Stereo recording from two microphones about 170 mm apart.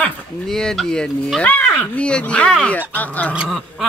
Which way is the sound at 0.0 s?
5° left (ahead or behind).